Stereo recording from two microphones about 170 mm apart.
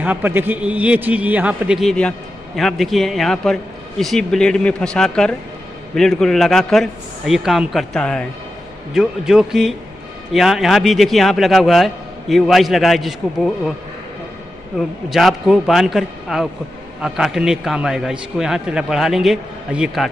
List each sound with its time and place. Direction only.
0.0 s a man's voice: 10° right (ahead or behind)
14.8 s a man's voice: centre (ahead or behind)